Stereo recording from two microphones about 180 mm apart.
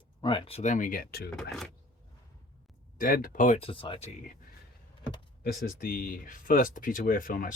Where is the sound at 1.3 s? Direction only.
5° left (ahead or behind).